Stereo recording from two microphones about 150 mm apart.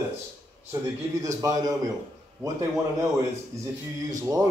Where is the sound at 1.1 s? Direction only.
20° right (ahead or behind).